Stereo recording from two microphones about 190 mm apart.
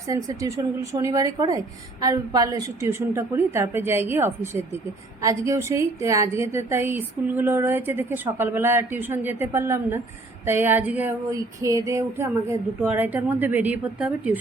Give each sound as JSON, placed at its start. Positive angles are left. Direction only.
{"t": 0.1, "sound": "a woman's voice", "side_deg": -15}